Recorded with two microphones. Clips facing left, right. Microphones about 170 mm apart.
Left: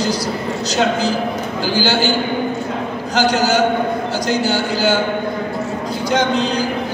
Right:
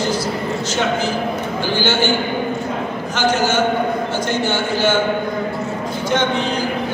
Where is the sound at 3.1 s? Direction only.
35° left (ahead or behind).